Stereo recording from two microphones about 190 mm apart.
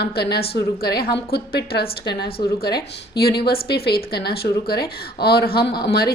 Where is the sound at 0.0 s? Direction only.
60° left (ahead or behind).